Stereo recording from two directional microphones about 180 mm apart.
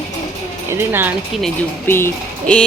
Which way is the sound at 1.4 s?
10° left (ahead or behind).